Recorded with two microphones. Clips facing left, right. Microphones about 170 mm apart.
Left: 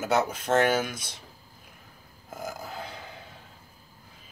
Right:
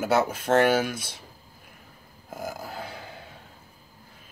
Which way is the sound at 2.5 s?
5° right (ahead or behind).